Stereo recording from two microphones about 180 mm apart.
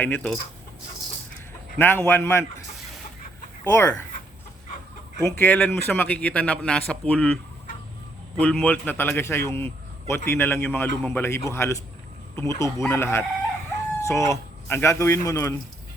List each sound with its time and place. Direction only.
0.0 s a man's voice: 10° left (ahead or behind)
1.8 s a man's voice: 10° left (ahead or behind)
3.6 s a man's voice: 15° left (ahead or behind)
5.2 s a man's voice: 10° left (ahead or behind)
8.4 s a man's voice: 5° left (ahead or behind)